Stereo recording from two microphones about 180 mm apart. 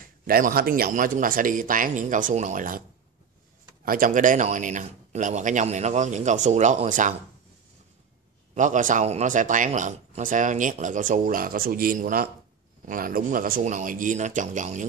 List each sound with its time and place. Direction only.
0.3 s speech: 55° right (ahead or behind)
3.8 s speech: 50° right (ahead or behind)
8.5 s speech: 45° right (ahead or behind)